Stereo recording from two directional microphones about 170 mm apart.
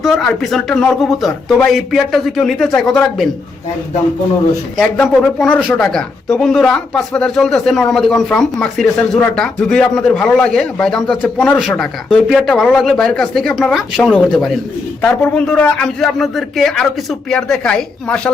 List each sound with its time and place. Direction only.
0.0 s a man's voice: centre (ahead or behind)
4.8 s a man's voice: centre (ahead or behind)